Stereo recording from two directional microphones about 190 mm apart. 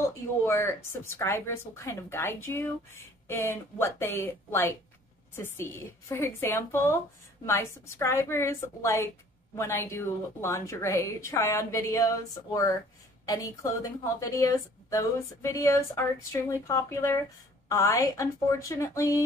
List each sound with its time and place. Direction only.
0.5 s a woman's voice: 15° left (ahead or behind)